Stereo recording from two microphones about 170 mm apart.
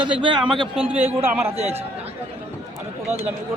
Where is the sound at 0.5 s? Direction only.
30° right (ahead or behind).